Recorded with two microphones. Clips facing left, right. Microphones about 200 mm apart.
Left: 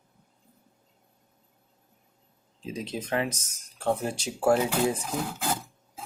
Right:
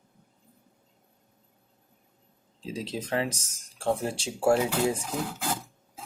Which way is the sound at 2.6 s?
30° right (ahead or behind).